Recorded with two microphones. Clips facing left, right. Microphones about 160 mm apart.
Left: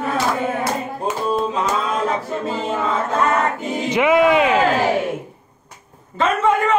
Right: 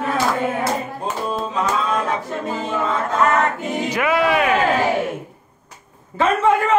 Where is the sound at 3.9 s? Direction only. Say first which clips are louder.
Left 5 dB; 20° left (ahead or behind).